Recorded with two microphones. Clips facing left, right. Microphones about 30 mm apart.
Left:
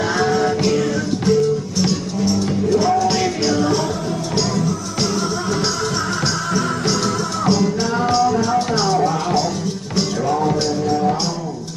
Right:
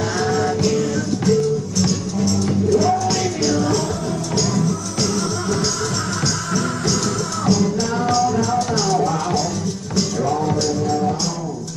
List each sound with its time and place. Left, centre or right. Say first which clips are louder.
0.0 s music: left 2 dB; centre
7.4 s music: left 1 dB; left